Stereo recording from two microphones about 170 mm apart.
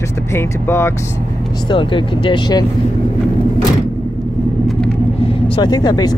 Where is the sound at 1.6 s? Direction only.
30° left (ahead or behind).